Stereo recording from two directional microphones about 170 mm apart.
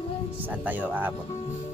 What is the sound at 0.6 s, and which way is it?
Speech, 10° right (ahead or behind).